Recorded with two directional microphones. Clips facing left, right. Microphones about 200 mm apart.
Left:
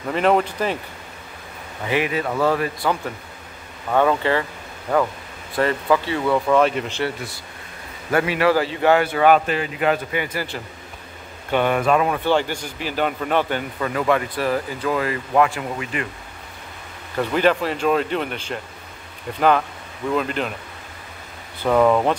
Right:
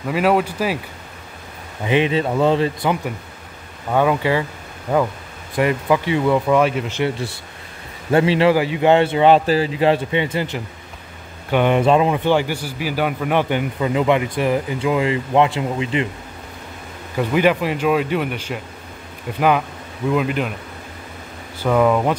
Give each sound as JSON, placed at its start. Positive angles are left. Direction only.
{"t": 0.1, "sound": "a man's voice", "side_deg": -5}
{"t": 1.9, "sound": "a man's voice", "side_deg": -25}
{"t": 3.9, "sound": "a man's voice", "side_deg": -10}
{"t": 5.6, "sound": "a man's voice", "side_deg": -15}
{"t": 7.0, "sound": "a man's voice", "side_deg": -25}
{"t": 8.5, "sound": "a man's voice", "side_deg": -15}
{"t": 8.9, "sound": "a man's voice", "side_deg": -25}
{"t": 17.2, "sound": "a man's voice", "side_deg": -10}
{"t": 20.1, "sound": "a man's voice", "side_deg": -10}
{"t": 21.6, "sound": "speech", "side_deg": 0}